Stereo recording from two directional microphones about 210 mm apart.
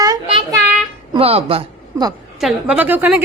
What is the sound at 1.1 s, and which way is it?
A man's voice, 30° right (ahead or behind).